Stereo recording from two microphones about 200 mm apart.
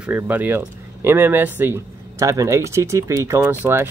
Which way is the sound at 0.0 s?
5° right (ahead or behind).